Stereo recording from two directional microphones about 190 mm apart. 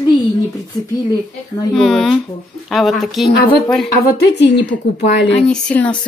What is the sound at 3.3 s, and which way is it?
A woman's voice, 50° left (ahead or behind).